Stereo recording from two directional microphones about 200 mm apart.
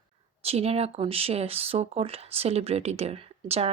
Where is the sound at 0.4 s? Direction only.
30° right (ahead or behind).